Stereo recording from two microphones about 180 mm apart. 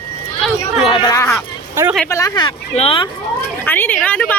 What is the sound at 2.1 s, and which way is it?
Speech, 20° left (ahead or behind).